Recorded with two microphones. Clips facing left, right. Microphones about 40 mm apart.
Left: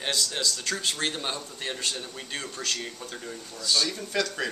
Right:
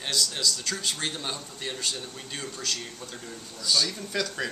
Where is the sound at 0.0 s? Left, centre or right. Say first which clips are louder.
Even; centre.